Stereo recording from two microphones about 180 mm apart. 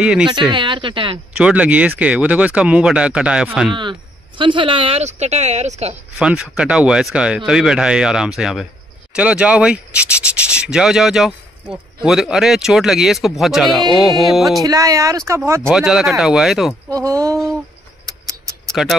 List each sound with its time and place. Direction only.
0.0 s rub: 5° right (ahead or behind)
0.3 s speech: 25° right (ahead or behind)
1.3 s speech: 5° right (ahead or behind)
4.4 s speech: 25° right (ahead or behind)
6.1 s rub: 5° right (ahead or behind)
14.6 s speech: 20° right (ahead or behind)
15.7 s rub: 5° right (ahead or behind)
16.9 s speech: 15° right (ahead or behind)
18.7 s speech: centre (ahead or behind)